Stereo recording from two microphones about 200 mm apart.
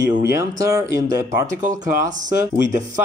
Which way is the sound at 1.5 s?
40° right (ahead or behind).